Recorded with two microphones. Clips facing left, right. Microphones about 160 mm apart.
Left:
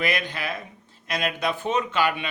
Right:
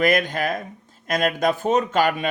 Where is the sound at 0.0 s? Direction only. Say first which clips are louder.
Right 7 dB; 45° right (ahead or behind).